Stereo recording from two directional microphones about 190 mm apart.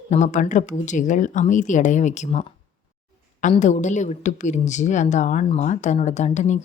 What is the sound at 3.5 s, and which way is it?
A woman's voice, 40° left (ahead or behind).